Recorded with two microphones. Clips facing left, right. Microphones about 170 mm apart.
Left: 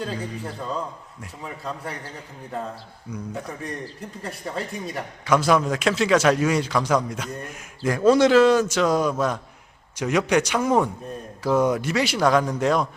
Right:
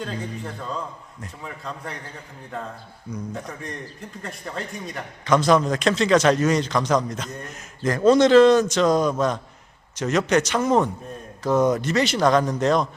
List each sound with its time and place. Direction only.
0.0 s a man's voice: 5° left (ahead or behind)
3.1 s a man's voice: 10° left (ahead or behind)
4.3 s a man's voice: 5° left (ahead or behind)